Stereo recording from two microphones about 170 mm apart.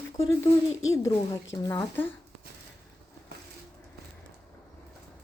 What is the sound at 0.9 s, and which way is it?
A woman's voice, 20° left (ahead or behind).